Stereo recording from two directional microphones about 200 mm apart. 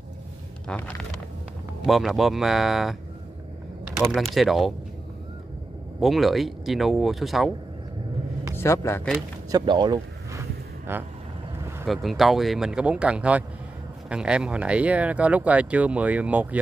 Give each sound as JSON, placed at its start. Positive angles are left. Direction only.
{"t": 0.7, "sound": "speech", "side_deg": 10}
{"t": 4.1, "sound": "speech", "side_deg": 0}
{"t": 5.9, "sound": "speech", "side_deg": 0}
{"t": 8.5, "sound": "speech", "side_deg": 15}
{"t": 9.5, "sound": "a sound", "side_deg": -20}
{"t": 10.9, "sound": "speech", "side_deg": -10}
{"t": 11.8, "sound": "speech", "side_deg": 0}